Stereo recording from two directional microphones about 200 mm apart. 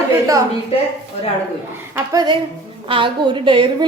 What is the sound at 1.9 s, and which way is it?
A woman's voice, 20° right (ahead or behind).